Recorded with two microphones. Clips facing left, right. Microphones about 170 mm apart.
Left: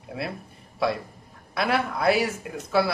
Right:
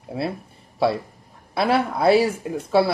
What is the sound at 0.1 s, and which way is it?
Speech, 30° right (ahead or behind).